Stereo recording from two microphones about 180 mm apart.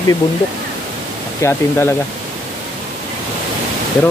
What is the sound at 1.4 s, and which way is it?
Speech, 15° left (ahead or behind).